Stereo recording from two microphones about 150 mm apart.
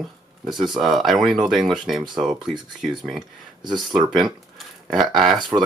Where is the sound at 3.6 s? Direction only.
30° right (ahead or behind).